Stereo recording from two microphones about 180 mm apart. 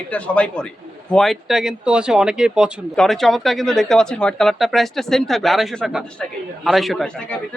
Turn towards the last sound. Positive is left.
turn(degrees=0)  # may be behind; listen again after turning